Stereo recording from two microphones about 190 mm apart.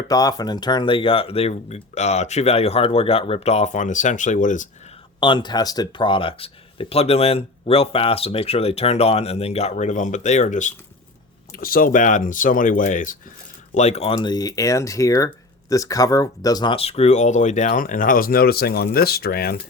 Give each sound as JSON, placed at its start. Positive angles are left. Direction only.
{"t": 0.1, "sound": "speech", "side_deg": 20}
{"t": 5.2, "sound": "speech", "side_deg": 25}
{"t": 14.2, "sound": "speech", "side_deg": 20}